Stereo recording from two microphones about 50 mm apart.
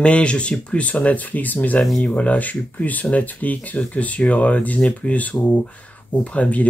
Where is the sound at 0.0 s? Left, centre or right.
Left.